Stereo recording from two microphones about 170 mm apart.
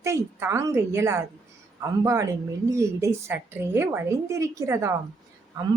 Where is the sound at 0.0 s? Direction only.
15° right (ahead or behind).